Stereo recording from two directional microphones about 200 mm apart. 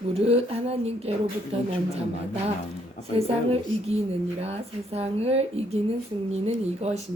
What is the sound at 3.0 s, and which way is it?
A woman's voice, 30° right (ahead or behind).